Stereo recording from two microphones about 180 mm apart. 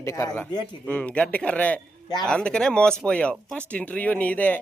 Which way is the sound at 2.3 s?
5° left (ahead or behind).